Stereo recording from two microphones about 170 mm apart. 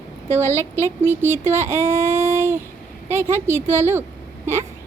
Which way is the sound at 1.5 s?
15° right (ahead or behind).